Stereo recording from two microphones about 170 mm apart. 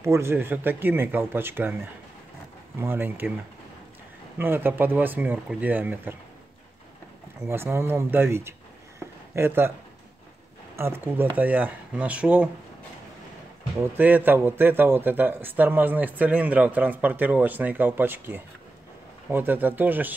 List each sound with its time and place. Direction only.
0.0 s a man's voice: 15° right (ahead or behind)
4.4 s a man's voice: 10° right (ahead or behind)
7.3 s a man's voice: 15° right (ahead or behind)
10.8 s a man's voice: 15° right (ahead or behind)
13.9 s a man's voice: 10° right (ahead or behind)